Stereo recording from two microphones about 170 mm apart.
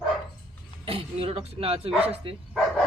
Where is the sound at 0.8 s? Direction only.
35° right (ahead or behind).